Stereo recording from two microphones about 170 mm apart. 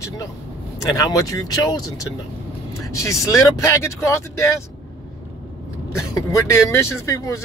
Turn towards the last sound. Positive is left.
turn(degrees=20)  # may be behind; listen again after turning